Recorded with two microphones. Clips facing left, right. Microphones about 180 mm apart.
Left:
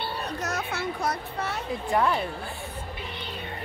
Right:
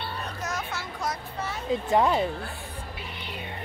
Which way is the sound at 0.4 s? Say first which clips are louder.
Left 2 dB; 65° left (ahead or behind).